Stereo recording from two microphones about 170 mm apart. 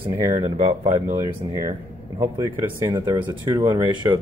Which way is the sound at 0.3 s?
35° right (ahead or behind).